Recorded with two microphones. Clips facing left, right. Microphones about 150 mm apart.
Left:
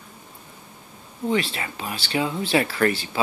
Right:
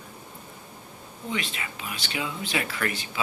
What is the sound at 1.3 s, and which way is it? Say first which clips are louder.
Speech: left 8 dB; 35° left (ahead or behind).